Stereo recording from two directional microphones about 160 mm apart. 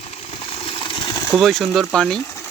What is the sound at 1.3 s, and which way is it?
Speech, centre (ahead or behind).